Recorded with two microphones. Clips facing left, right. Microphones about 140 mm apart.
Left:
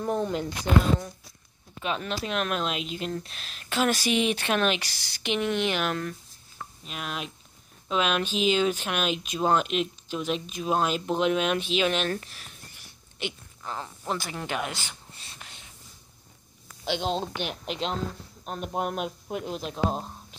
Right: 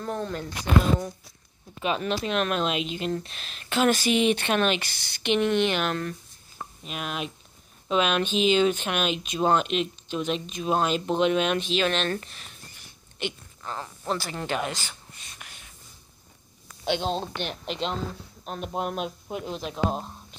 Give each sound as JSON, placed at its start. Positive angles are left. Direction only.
{"t": 0.0, "sound": "speech", "side_deg": 15}
{"t": 1.8, "sound": "speech", "side_deg": -5}
{"t": 15.1, "sound": "a sound", "side_deg": 30}
{"t": 17.1, "sound": "speech", "side_deg": 10}